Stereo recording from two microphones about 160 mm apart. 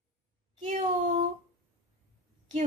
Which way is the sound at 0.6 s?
45° right (ahead or behind).